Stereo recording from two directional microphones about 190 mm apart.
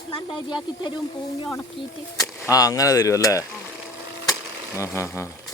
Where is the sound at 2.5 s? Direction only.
20° left (ahead or behind).